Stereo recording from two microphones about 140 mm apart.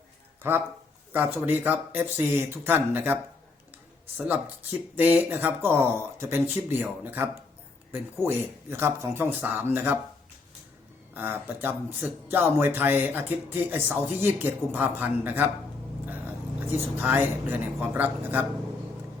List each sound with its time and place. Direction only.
0.4 s speech: 15° right (ahead or behind)
4.2 s speech: 10° right (ahead or behind)
8.7 s speech: 15° right (ahead or behind)
11.1 s speech: 15° right (ahead or behind)
17.0 s speech: 15° right (ahead or behind)